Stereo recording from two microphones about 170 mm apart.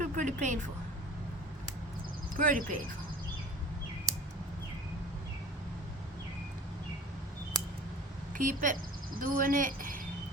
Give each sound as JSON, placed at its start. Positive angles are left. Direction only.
{"t": 0.0, "sound": "speech", "side_deg": -50}
{"t": 2.3, "sound": "speech", "side_deg": -55}
{"t": 8.3, "sound": "a woman's voice", "side_deg": -50}